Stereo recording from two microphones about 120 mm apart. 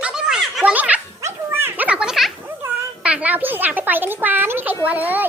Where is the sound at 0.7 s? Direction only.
15° right (ahead or behind).